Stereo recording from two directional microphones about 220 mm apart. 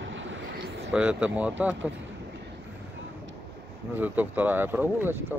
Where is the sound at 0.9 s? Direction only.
5° right (ahead or behind).